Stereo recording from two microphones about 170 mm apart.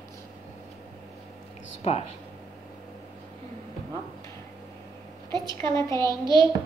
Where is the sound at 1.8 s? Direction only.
35° left (ahead or behind).